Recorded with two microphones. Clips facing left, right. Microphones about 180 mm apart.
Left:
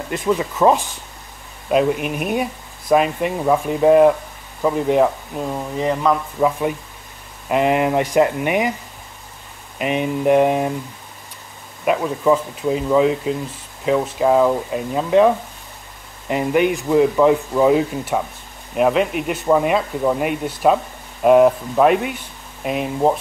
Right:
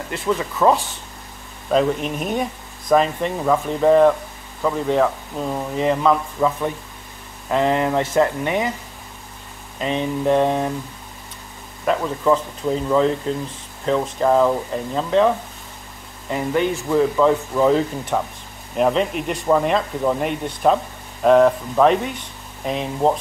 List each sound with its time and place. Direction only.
0.1 s speech: 15° left (ahead or behind)
5.4 s speech: centre (ahead or behind)
7.4 s speech: 15° left (ahead or behind)
9.8 s speech: 15° left (ahead or behind)
11.8 s speech: 10° left (ahead or behind)